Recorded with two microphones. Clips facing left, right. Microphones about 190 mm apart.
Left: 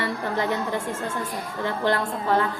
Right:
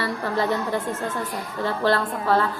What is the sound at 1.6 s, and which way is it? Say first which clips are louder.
Speech: right 2 dB; 20° left (ahead or behind).